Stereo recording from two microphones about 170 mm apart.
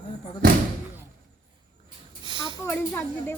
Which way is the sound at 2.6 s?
10° left (ahead or behind).